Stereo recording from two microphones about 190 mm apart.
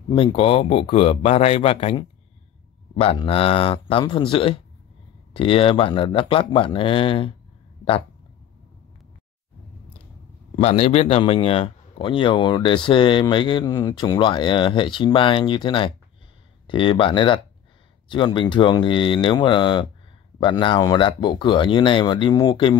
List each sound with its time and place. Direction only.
0.1 s a man's voice: 25° left (ahead or behind)
10.5 s speech: 35° left (ahead or behind)